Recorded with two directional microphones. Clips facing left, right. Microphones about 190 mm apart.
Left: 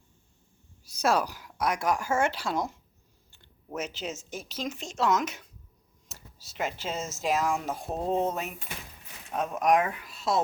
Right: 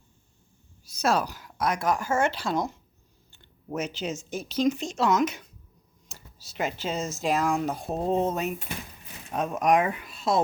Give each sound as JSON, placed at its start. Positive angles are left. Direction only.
{"t": 0.9, "sound": "speech", "side_deg": 15}
{"t": 3.8, "sound": "speech", "side_deg": 5}